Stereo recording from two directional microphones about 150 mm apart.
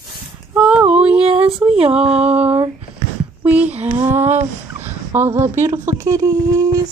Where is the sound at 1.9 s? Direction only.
5° right (ahead or behind).